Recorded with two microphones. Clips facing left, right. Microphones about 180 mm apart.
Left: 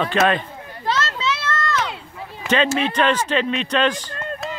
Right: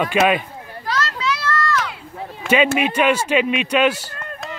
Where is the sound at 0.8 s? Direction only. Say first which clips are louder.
Even; 25° left (ahead or behind).